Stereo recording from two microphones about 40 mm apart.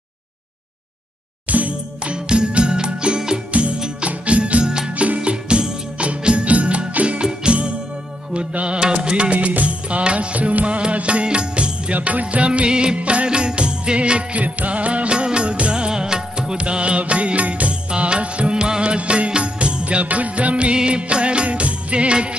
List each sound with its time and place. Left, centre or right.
1.5 s music: right
2.1 s music: right
7.2 s music: right
9.0 s music of bollywood: right
11.2 s music: right
14.4 s music: right
20.7 s music of bollywood: right